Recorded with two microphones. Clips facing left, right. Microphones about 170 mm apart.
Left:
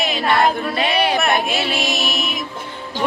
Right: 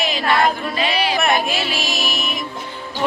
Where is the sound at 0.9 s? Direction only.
55° left (ahead or behind).